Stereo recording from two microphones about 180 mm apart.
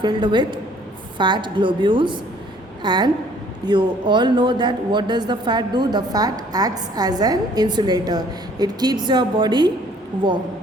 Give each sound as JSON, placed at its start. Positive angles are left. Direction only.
{"t": 0.0, "sound": "speech", "side_deg": -25}